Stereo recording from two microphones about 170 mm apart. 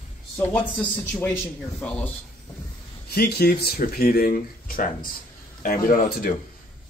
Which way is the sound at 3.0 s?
65° left (ahead or behind).